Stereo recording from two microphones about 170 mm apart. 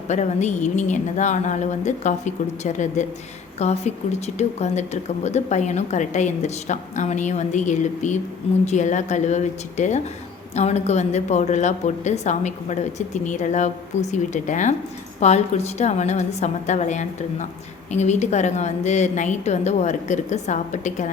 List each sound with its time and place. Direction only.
0.1 s speech: 45° left (ahead or behind)